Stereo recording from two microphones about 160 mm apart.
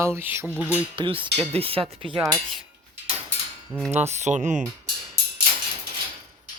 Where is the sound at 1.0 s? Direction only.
30° right (ahead or behind).